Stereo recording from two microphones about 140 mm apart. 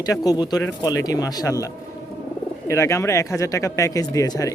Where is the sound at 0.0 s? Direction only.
25° left (ahead or behind).